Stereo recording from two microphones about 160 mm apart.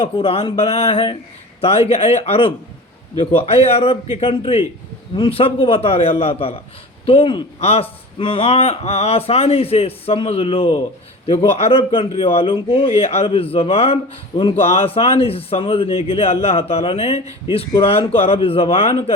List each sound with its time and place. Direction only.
0.0 s a man's voice: 35° left (ahead or behind)